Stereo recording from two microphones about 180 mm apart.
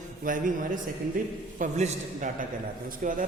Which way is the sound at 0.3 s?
50° right (ahead or behind).